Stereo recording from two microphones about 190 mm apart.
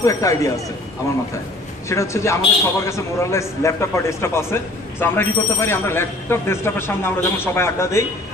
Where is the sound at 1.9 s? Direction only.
15° left (ahead or behind).